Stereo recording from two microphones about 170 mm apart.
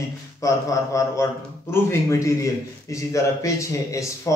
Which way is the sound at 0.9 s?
15° left (ahead or behind).